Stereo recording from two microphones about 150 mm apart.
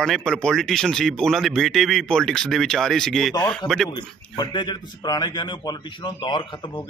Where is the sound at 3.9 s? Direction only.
30° left (ahead or behind).